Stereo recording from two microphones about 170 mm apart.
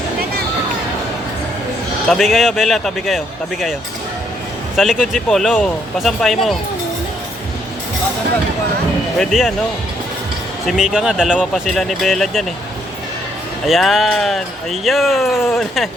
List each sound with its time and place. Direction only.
2.0 s speech: centre (ahead or behind)
4.8 s speech: centre (ahead or behind)
9.1 s speech: centre (ahead or behind)
10.7 s speech: 5° right (ahead or behind)
13.7 s speech: centre (ahead or behind)